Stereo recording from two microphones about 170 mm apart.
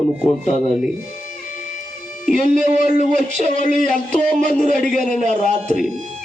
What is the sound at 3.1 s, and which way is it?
A man's voice, 50° left (ahead or behind).